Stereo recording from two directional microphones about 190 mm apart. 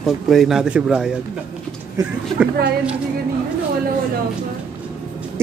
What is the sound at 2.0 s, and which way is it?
Speech, 20° right (ahead or behind).